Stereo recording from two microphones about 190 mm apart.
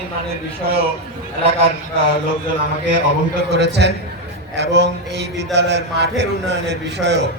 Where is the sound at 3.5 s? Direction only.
60° right (ahead or behind).